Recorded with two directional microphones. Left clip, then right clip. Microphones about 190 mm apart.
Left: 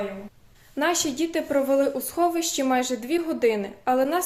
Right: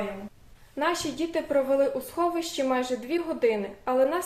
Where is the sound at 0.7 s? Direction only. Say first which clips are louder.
Left 3 dB; 50° left (ahead or behind).